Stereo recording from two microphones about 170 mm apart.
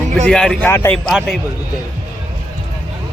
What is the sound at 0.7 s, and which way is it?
Speech, 15° left (ahead or behind).